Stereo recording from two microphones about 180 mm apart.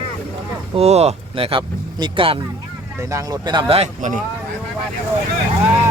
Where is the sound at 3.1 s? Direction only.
20° right (ahead or behind).